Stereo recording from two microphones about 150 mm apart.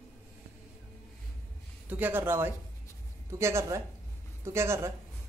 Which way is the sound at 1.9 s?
10° right (ahead or behind).